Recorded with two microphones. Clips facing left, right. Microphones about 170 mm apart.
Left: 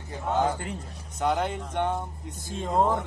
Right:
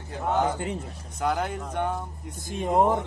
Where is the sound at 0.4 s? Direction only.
20° right (ahead or behind).